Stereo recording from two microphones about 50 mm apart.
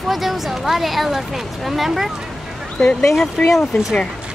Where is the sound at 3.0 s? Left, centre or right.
Centre.